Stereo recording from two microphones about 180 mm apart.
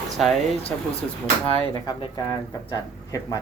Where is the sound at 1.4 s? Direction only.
35° left (ahead or behind).